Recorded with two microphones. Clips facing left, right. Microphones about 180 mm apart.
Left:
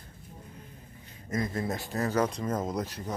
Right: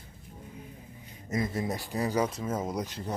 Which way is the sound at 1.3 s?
20° right (ahead or behind).